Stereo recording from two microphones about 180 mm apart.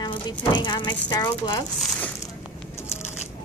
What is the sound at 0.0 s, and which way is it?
A woman's voice, 25° left (ahead or behind).